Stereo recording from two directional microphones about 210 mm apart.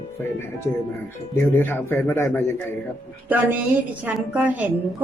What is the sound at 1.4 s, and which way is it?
A man's voice, 10° left (ahead or behind).